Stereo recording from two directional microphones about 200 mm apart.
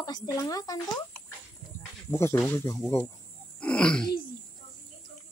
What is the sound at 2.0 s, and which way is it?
Speech, 15° left (ahead or behind).